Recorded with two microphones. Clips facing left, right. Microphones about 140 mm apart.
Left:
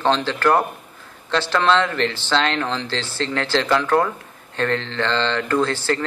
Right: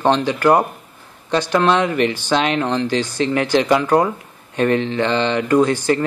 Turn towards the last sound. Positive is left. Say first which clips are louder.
# right 5 dB
turn(degrees=-15)  # may be behind; listen again after turning